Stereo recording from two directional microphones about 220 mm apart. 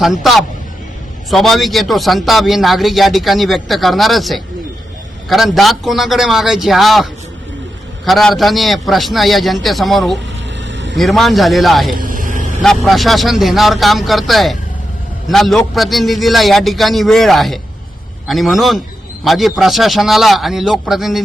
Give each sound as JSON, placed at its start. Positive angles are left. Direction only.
{"t": 0.0, "sound": "a man's voice", "side_deg": 0}
{"t": 10.7, "sound": "a sound", "side_deg": -55}
{"t": 10.9, "sound": "a man's voice", "side_deg": 0}
{"t": 11.9, "sound": "vehicle", "side_deg": -40}
{"t": 12.6, "sound": "a man's voice", "side_deg": 0}